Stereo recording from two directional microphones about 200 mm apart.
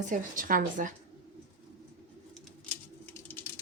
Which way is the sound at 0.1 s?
45° right (ahead or behind).